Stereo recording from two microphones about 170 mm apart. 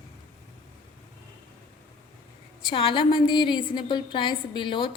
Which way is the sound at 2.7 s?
30° left (ahead or behind).